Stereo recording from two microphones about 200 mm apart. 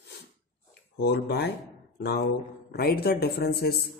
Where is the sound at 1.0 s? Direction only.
55° left (ahead or behind).